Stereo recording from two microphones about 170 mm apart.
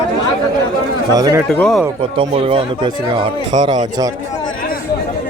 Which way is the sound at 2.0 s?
35° right (ahead or behind).